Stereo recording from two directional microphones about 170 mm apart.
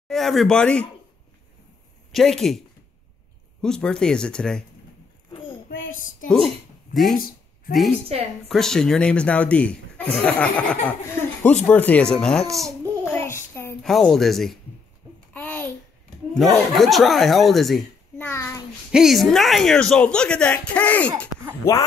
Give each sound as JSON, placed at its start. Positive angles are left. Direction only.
{"t": 0.1, "sound": "speech", "side_deg": 0}
{"t": 2.1, "sound": "speech", "side_deg": 0}
{"t": 3.6, "sound": "speech", "side_deg": 5}
{"t": 5.7, "sound": "child singing", "side_deg": 55}
{"t": 6.2, "sound": "a sound", "side_deg": 0}
{"t": 7.2, "sound": "a sound", "side_deg": 60}
{"t": 8.1, "sound": "a woman's voice", "side_deg": -35}
{"t": 8.5, "sound": "speech", "side_deg": 5}
{"t": 13.0, "sound": "child singing", "side_deg": 15}
{"t": 13.8, "sound": "speech", "side_deg": 0}
{"t": 16.3, "sound": "speech", "side_deg": 0}
{"t": 18.1, "sound": "a child's voice", "side_deg": 15}
{"t": 18.9, "sound": "speech", "side_deg": -5}